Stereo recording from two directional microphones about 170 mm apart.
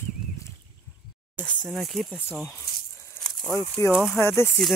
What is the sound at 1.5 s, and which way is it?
Speech, 5° left (ahead or behind).